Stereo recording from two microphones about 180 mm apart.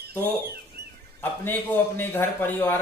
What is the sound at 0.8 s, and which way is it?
Bird, 60° right (ahead or behind).